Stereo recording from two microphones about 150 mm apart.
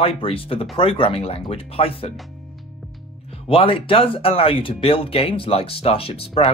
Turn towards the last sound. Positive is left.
turn(degrees=40)  # may be behind; listen again after turning